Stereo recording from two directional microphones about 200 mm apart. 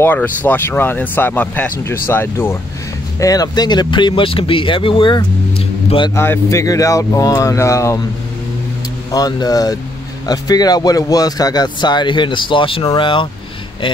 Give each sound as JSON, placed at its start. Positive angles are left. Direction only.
{"t": 0.0, "sound": "a man's voice", "side_deg": 10}
{"t": 6.1, "sound": "speech", "side_deg": 10}
{"t": 9.1, "sound": "a man's voice", "side_deg": 20}